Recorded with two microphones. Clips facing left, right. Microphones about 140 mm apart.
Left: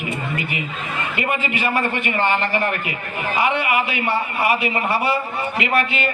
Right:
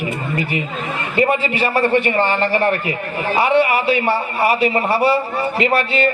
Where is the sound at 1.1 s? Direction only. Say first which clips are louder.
Right 8 dB; 35° right (ahead or behind).